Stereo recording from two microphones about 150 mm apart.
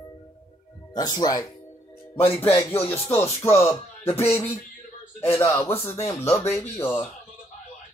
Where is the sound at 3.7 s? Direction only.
40° left (ahead or behind).